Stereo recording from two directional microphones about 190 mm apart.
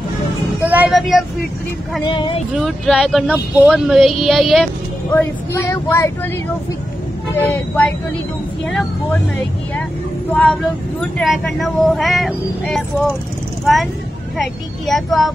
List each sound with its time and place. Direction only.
0.7 s music: 5° right (ahead or behind)
2.0 s speech: 25° left (ahead or behind)
2.5 s speech: centre (ahead or behind)
5.1 s speech: 10° left (ahead or behind)
7.3 s speech: 10° left (ahead or behind)
10.3 s speech: 5° left (ahead or behind)
14.4 s speech: centre (ahead or behind)